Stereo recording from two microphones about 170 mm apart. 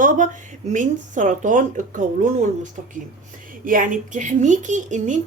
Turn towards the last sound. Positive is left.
turn(degrees=-45)  # may be behind; listen again after turning